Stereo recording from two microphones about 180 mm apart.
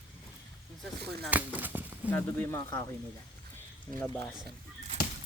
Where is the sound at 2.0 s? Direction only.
10° left (ahead or behind).